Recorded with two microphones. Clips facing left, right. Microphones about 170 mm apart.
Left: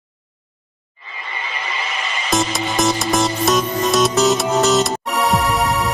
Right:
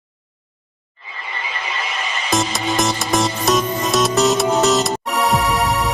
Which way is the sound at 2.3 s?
Centre (ahead or behind).